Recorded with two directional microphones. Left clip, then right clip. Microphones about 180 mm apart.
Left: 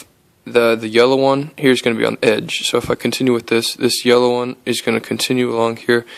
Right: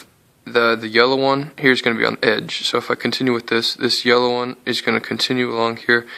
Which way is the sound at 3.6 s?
75° left (ahead or behind).